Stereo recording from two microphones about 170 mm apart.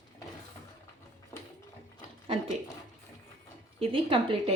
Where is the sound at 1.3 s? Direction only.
15° left (ahead or behind).